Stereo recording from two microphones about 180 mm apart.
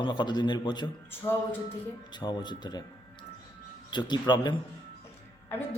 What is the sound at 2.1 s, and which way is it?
Speech, 25° left (ahead or behind).